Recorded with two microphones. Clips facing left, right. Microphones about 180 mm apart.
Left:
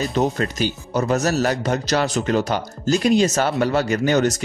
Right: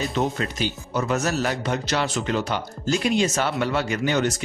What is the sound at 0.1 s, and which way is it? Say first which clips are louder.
Speech: left 4 dB; 40° left (ahead or behind).